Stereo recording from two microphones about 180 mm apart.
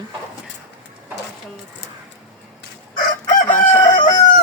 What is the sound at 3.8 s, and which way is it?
Chicken, 40° left (ahead or behind).